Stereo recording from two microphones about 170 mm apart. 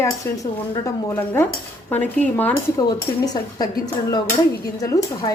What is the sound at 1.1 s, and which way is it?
Speech, 15° left (ahead or behind).